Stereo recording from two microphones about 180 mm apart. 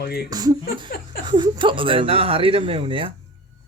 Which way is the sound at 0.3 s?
20° right (ahead or behind).